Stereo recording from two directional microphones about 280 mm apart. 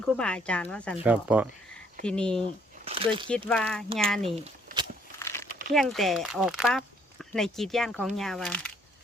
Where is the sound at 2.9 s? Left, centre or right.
Centre.